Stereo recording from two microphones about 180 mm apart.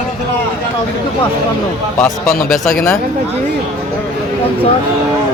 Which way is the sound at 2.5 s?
Centre (ahead or behind).